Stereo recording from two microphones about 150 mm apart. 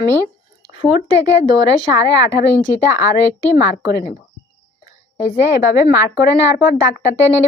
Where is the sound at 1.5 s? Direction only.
30° right (ahead or behind).